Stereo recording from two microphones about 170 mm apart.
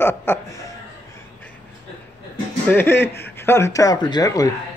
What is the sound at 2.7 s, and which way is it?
Speech, 15° left (ahead or behind).